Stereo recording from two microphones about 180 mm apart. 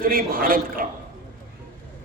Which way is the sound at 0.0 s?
50° right (ahead or behind).